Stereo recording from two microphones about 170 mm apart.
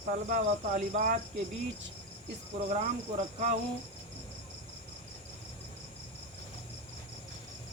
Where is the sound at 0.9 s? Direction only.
50° right (ahead or behind).